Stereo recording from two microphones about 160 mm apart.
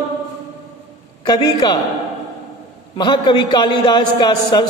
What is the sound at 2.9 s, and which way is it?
A man's voice, 30° left (ahead or behind).